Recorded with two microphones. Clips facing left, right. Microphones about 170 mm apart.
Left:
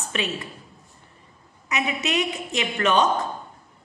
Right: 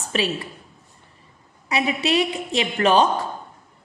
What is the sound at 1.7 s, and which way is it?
A woman's voice, 30° right (ahead or behind).